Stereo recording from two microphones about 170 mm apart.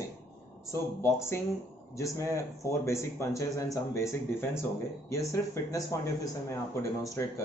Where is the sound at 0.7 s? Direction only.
15° left (ahead or behind).